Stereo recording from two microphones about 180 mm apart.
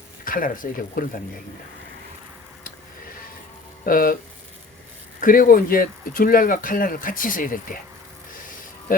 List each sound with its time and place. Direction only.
0.3 s speech: 50° left (ahead or behind)
3.8 s speech: 50° left (ahead or behind)
5.2 s speech: 50° left (ahead or behind)
8.9 s speech: 50° left (ahead or behind)